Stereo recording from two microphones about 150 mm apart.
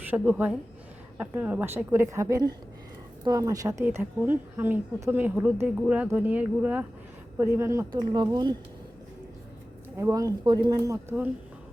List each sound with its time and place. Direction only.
0.1 s a woman's voice: 10° right (ahead or behind); by 8.5 s 30° right (ahead or behind)
10.0 s a woman's voice: 25° right (ahead or behind)